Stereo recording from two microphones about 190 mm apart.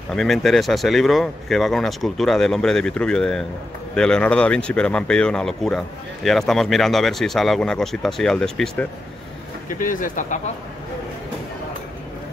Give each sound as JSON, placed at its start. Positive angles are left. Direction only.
{"t": 0.1, "sound": "speech", "side_deg": 0}
{"t": 9.7, "sound": "speech", "side_deg": 45}